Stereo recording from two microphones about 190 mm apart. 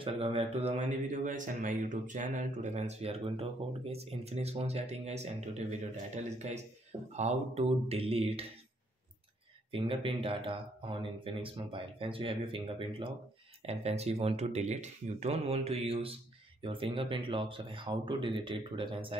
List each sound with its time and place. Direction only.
0.0 s speech: 30° right (ahead or behind)
9.7 s speech: 30° right (ahead or behind)